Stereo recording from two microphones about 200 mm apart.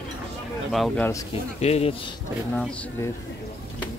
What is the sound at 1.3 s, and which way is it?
Speech, 30° left (ahead or behind).